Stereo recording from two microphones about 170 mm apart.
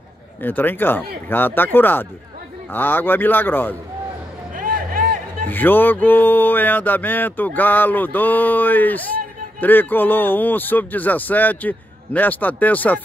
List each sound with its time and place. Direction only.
0.4 s music: 10° left (ahead or behind)
4.6 s music: 55° right (ahead or behind)
5.5 s music: 10° left (ahead or behind)